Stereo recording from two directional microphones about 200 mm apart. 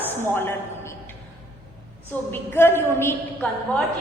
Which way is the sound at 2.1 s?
10° left (ahead or behind).